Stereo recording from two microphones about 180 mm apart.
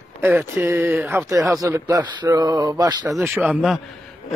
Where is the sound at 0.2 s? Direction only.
10° right (ahead or behind).